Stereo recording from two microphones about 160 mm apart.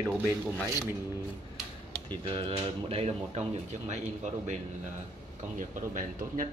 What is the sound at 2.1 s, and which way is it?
Speech, 35° right (ahead or behind).